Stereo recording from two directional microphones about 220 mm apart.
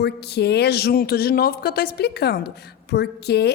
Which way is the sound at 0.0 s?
50° left (ahead or behind).